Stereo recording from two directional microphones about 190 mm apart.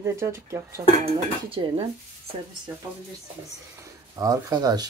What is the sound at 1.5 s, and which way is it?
Speech, 30° right (ahead or behind).